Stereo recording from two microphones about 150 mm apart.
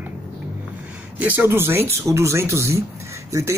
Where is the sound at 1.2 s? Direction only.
10° right (ahead or behind).